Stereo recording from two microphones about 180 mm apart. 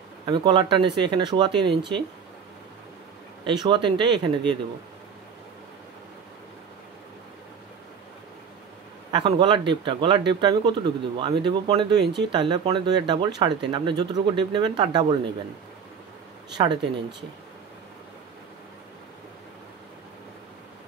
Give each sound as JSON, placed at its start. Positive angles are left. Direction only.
{"t": 0.3, "sound": "speech", "side_deg": -25}
{"t": 3.4, "sound": "speech", "side_deg": -25}
{"t": 9.1, "sound": "speech", "side_deg": -25}
{"t": 16.5, "sound": "speech", "side_deg": -25}